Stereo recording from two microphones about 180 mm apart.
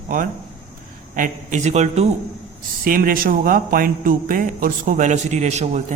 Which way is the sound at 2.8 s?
55° right (ahead or behind).